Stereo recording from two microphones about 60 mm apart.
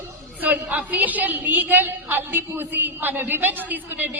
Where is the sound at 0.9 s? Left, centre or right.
Right.